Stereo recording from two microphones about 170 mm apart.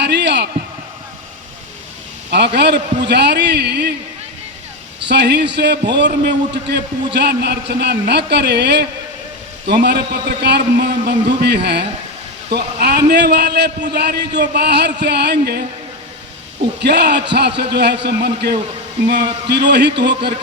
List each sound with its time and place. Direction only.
0.0 s a sound: 90° right
2.3 s a man's voice: 80° right
5.0 s a man's voice: 85° right
16.8 s a man's voice: 80° right